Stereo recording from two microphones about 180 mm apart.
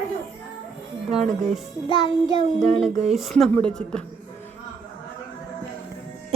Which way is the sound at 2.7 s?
Centre (ahead or behind).